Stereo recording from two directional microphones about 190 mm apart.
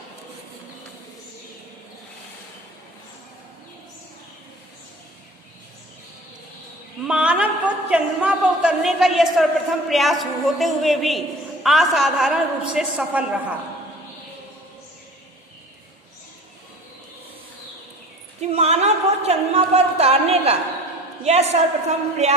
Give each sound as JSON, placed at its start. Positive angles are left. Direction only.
{"t": 7.1, "sound": "a woman's voice", "side_deg": -5}
{"t": 18.3, "sound": "a sound", "side_deg": -35}
{"t": 21.2, "sound": "a woman's voice", "side_deg": -35}